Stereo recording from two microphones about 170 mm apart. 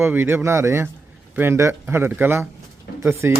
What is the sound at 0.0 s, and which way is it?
A man's voice, 10° right (ahead or behind).